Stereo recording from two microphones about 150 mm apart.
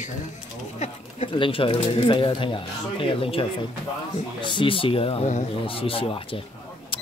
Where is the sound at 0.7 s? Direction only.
40° left (ahead or behind).